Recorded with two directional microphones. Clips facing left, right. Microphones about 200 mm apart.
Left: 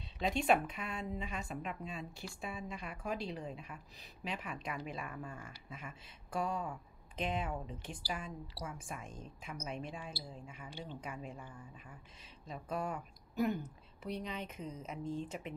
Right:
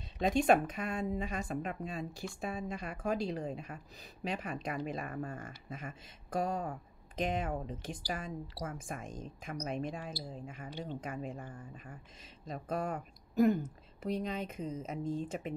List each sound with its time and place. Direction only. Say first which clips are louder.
0.2 s speech: right 4 dB; 45° right (ahead or behind)